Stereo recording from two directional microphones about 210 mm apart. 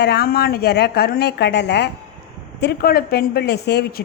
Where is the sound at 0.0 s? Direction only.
50° left (ahead or behind).